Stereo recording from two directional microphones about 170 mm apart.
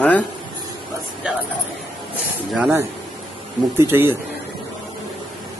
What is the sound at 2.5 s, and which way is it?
Speech, 10° right (ahead or behind).